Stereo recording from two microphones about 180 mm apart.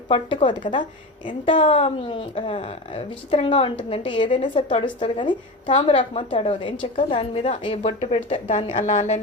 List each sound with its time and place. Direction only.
0.1 s a woman's voice: 25° left (ahead or behind)